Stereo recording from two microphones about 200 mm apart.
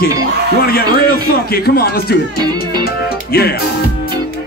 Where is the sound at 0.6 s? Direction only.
50° left (ahead or behind).